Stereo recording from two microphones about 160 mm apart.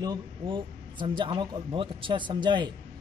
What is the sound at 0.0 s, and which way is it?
A woman's voice, 25° right (ahead or behind).